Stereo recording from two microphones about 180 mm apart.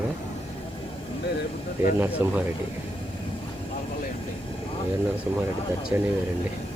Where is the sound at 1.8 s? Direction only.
10° right (ahead or behind).